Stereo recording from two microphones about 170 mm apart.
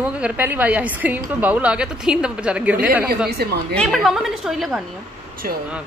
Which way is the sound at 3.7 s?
5° left (ahead or behind).